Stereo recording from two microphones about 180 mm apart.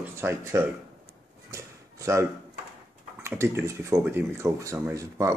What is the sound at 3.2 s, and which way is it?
Speech, 15° right (ahead or behind).